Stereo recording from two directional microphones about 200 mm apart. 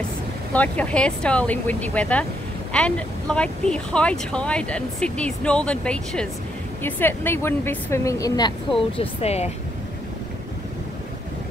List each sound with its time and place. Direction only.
0.5 s a woman's voice: 5° left (ahead or behind); by 9.5 s 30° left (ahead or behind)